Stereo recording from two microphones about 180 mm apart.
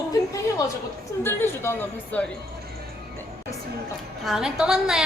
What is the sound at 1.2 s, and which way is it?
Speech, 10° left (ahead or behind).